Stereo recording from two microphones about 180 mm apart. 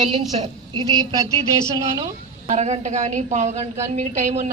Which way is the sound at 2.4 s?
40° right (ahead or behind).